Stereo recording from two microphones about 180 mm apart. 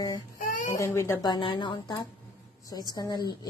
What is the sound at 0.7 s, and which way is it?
Speech, 15° left (ahead or behind).